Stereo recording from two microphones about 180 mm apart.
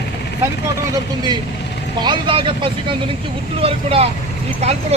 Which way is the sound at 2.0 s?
25° right (ahead or behind).